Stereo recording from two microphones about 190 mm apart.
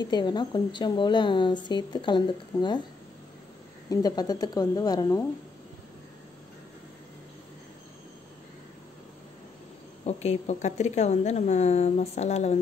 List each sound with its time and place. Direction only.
0.0 s speech: 20° left (ahead or behind)
3.9 s speech: 20° left (ahead or behind)
10.0 s a woman's voice: 35° left (ahead or behind)